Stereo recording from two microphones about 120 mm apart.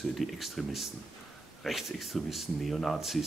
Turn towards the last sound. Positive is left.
turn(degrees=0)  # may be behind; listen again after turning